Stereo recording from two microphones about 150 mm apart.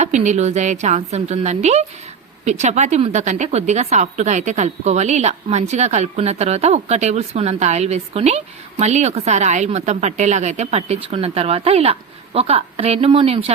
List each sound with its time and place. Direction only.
0.0 s a woman's voice: 50° right (ahead or behind)